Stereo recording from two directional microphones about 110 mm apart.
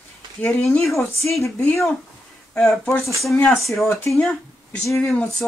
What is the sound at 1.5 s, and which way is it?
Speech, 5° left (ahead or behind).